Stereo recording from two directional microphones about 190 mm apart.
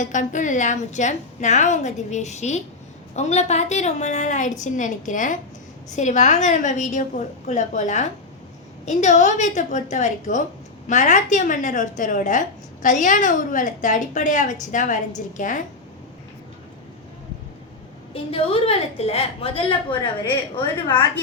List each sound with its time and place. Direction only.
0.0 s a woman's voice: 40° left (ahead or behind)
18.1 s a woman's voice: 30° left (ahead or behind)